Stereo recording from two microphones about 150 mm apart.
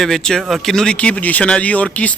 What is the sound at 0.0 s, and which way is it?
Speech, 5° left (ahead or behind).